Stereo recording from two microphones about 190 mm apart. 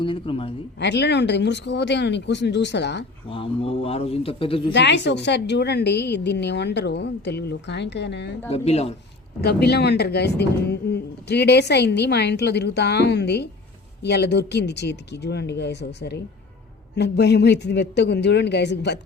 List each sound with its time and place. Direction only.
0.0 s speech: 25° left (ahead or behind)
0.8 s speech: 65° left (ahead or behind)
3.2 s speech: 30° left (ahead or behind)
4.7 s speech: 65° left (ahead or behind)
8.4 s speech: 35° left (ahead or behind)
9.4 s speech: 60° left (ahead or behind)